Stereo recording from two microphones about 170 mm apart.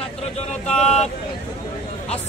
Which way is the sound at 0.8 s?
40° left (ahead or behind).